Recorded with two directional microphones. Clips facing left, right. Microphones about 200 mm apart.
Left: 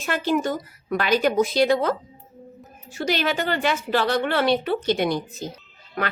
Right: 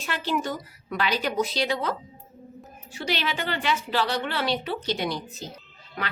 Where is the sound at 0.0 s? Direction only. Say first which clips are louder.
Left 5 dB; 50° left (ahead or behind).